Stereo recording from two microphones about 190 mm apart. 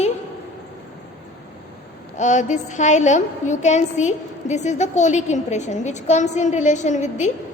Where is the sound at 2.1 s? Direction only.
40° left (ahead or behind).